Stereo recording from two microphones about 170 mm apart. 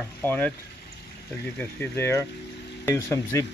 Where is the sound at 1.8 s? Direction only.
15° left (ahead or behind).